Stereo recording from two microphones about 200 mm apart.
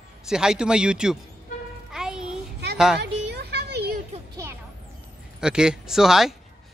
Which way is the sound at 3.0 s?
55° right (ahead or behind).